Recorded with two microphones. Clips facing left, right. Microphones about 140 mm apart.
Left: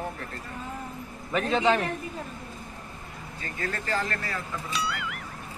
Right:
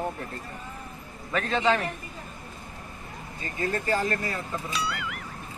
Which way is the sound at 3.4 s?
20° right (ahead or behind).